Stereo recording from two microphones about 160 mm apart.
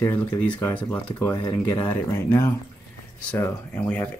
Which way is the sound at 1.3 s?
25° left (ahead or behind).